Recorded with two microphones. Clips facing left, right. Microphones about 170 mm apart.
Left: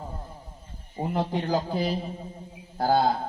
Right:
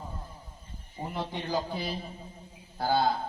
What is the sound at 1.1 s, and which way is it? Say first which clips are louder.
Mantra: left 6 dB; 45° left (ahead or behind).